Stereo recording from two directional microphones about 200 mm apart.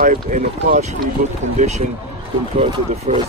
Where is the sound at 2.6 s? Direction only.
25° right (ahead or behind).